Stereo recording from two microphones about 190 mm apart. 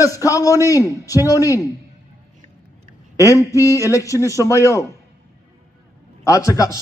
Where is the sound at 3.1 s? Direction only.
15° left (ahead or behind).